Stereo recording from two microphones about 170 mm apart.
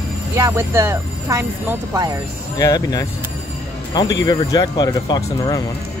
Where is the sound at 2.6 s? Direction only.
20° left (ahead or behind).